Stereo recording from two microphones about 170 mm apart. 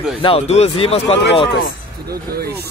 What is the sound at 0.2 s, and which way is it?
Speech, 35° left (ahead or behind).